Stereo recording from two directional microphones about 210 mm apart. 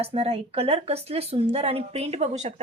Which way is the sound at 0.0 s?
30° right (ahead or behind).